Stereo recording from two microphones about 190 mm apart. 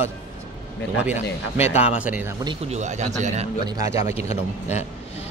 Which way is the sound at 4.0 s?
35° left (ahead or behind).